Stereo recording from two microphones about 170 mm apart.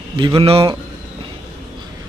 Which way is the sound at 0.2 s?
30° right (ahead or behind).